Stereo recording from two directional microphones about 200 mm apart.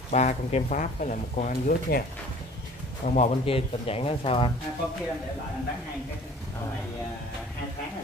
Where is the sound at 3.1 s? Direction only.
30° left (ahead or behind).